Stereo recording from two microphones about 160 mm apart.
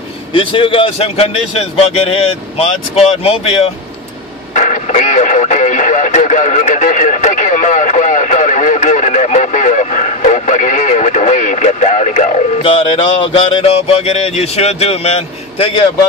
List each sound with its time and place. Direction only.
0.3 s a man's voice: 30° left (ahead or behind)
4.6 s radio: 50° left (ahead or behind)
12.6 s a man's voice: 35° left (ahead or behind)